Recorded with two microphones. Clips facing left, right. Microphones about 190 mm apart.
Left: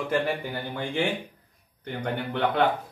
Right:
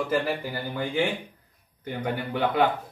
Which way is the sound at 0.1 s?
Centre (ahead or behind).